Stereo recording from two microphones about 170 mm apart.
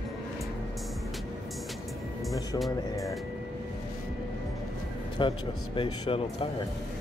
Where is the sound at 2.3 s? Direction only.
Centre (ahead or behind).